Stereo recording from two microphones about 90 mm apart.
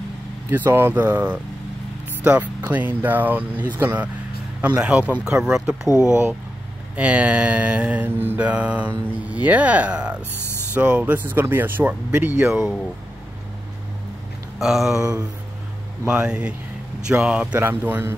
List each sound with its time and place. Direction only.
0.5 s speech: 20° right (ahead or behind)
2.2 s mantra: 15° right (ahead or behind)
2.6 s speech: 20° right (ahead or behind)
4.6 s mantra: 15° right (ahead or behind)
5.9 s speech: 35° left (ahead or behind)
7.0 s mantra: 15° right (ahead or behind)
10.7 s speech: 15° right (ahead or behind)
14.6 s a sound: 5° right (ahead or behind)
16.1 s mantra: 10° right (ahead or behind)
17.6 s speech: 20° right (ahead or behind)